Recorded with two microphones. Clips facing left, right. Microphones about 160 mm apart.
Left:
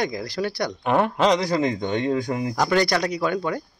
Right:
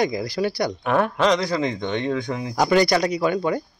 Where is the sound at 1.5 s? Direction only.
10° left (ahead or behind).